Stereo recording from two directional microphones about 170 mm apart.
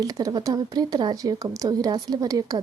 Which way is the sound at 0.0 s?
20° right (ahead or behind).